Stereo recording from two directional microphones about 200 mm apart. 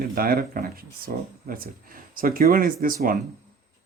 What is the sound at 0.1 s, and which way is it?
Speech, 50° right (ahead or behind).